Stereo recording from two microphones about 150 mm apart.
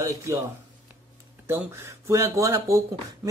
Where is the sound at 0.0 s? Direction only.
20° right (ahead or behind).